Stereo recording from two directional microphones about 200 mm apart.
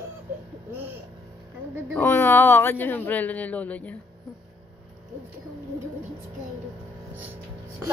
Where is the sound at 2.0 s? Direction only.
10° left (ahead or behind).